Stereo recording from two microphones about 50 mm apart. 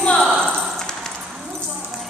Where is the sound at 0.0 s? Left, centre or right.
Centre.